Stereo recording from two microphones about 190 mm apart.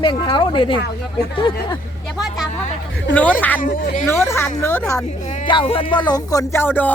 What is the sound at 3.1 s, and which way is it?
Speech, 10° left (ahead or behind).